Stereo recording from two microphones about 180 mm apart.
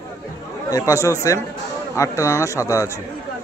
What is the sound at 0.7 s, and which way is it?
A man's voice, 20° left (ahead or behind).